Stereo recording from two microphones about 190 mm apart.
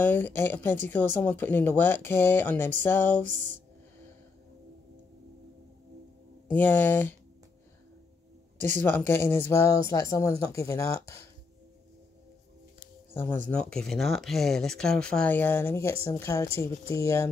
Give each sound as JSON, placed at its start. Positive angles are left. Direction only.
{"t": 0.0, "sound": "speech", "side_deg": 10}
{"t": 3.3, "sound": "speech", "side_deg": -40}
{"t": 6.4, "sound": "speech", "side_deg": 10}
{"t": 8.7, "sound": "speech", "side_deg": 10}
{"t": 13.1, "sound": "speech", "side_deg": 10}